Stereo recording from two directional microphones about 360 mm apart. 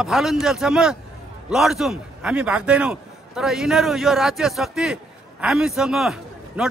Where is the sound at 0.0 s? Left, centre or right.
Centre.